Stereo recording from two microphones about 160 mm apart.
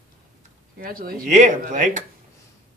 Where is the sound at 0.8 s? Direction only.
65° right (ahead or behind).